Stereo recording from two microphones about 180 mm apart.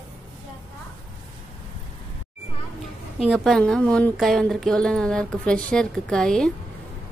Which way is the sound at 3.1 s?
Centre (ahead or behind).